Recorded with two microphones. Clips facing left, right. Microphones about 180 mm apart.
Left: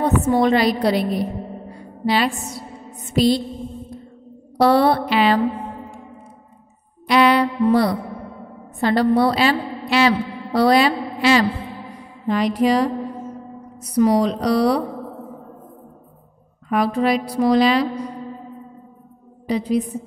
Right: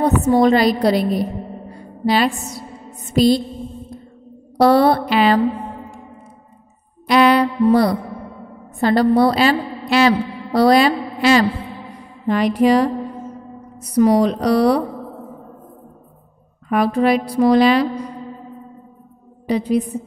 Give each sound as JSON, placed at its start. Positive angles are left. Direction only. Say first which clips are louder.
{"t": 0.0, "sound": "a woman's voice", "louder": "right 3 dB", "side_deg": -40}
{"t": 2.0, "sound": "mantra", "louder": "right 3 dB", "side_deg": -40}
{"t": 4.6, "sound": "mantra", "louder": "right 2 dB", "side_deg": -40}
{"t": 7.1, "sound": "music", "louder": "right 2 dB", "side_deg": -45}
{"t": 8.8, "sound": "a woman's voice", "louder": "right 2 dB", "side_deg": -40}
{"t": 12.3, "sound": "a woman's voice", "louder": "right 3 dB", "side_deg": -55}
{"t": 16.6, "sound": "a woman's voice", "louder": "right 3 dB", "side_deg": -55}
{"t": 19.4, "sound": "a woman's voice", "louder": "right 2 dB", "side_deg": -55}